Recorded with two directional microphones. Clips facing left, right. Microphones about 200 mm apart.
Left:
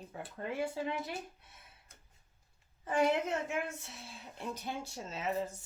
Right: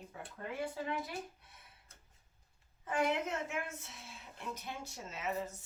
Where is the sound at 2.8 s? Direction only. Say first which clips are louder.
Left 4 dB; 30° left (ahead or behind).